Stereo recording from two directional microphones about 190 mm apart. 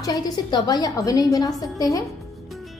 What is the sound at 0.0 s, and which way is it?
A woman's voice, 20° left (ahead or behind).